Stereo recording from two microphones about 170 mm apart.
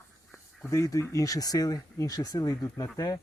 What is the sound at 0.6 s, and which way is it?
Speech, 20° left (ahead or behind).